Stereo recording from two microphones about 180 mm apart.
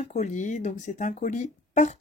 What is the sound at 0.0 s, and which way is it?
Speech, 40° left (ahead or behind).